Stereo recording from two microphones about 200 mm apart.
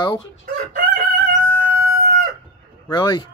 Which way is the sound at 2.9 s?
20° left (ahead or behind).